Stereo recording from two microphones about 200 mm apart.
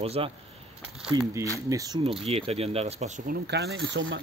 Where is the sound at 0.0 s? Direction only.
30° right (ahead or behind).